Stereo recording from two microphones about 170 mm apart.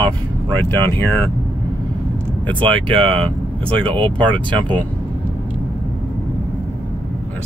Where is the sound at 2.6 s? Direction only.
30° right (ahead or behind).